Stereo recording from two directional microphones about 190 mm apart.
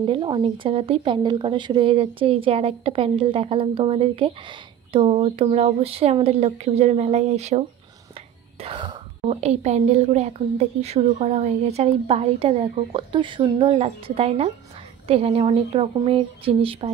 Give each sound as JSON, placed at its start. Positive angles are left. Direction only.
{"t": 0.0, "sound": "speech", "side_deg": -25}